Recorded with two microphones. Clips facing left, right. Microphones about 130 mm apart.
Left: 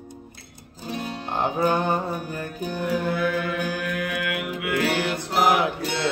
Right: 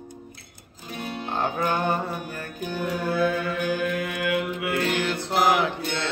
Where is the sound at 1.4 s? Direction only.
15° left (ahead or behind).